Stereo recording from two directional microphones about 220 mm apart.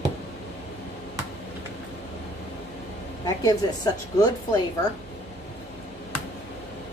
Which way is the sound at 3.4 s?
15° left (ahead or behind).